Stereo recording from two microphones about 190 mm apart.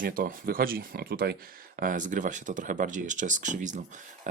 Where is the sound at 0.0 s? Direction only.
45° right (ahead or behind).